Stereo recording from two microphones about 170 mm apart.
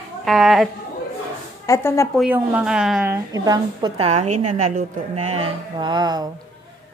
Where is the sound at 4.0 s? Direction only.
40° right (ahead or behind).